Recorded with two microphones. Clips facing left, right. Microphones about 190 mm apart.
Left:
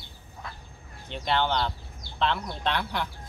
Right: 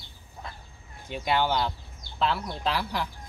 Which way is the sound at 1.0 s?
10° right (ahead or behind).